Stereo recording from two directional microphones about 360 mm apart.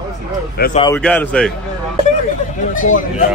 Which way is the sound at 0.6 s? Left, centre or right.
Centre.